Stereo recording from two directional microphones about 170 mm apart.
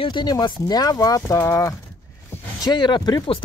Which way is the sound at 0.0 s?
25° left (ahead or behind).